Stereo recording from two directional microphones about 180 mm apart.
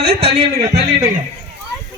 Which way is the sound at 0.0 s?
60° right (ahead or behind).